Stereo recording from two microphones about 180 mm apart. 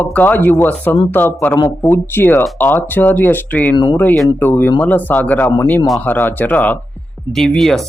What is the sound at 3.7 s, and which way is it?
Speech, 25° left (ahead or behind).